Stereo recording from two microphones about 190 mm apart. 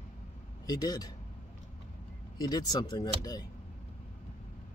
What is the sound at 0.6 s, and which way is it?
Speech, 20° left (ahead or behind).